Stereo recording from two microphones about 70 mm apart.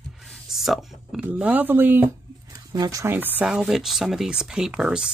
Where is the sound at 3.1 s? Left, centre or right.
Right.